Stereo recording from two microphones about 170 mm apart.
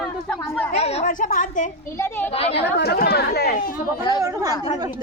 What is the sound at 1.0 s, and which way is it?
Speech, 50° left (ahead or behind).